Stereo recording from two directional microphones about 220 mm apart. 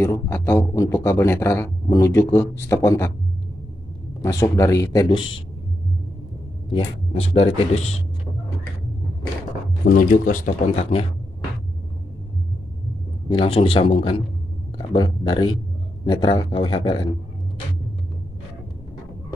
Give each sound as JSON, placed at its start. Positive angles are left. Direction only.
{"t": 0.0, "sound": "speech", "side_deg": 10}
{"t": 4.2, "sound": "speech", "side_deg": 15}
{"t": 6.7, "sound": "a man's voice", "side_deg": 25}
{"t": 9.8, "sound": "speech", "side_deg": 40}
{"t": 13.3, "sound": "a man's voice", "side_deg": 25}